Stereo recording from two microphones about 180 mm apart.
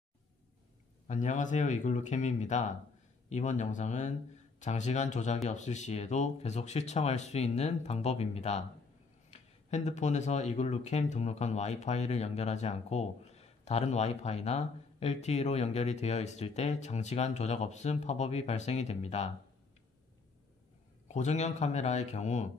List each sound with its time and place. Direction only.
1.0 s speech: 45° left (ahead or behind)
21.1 s speech: 40° left (ahead or behind)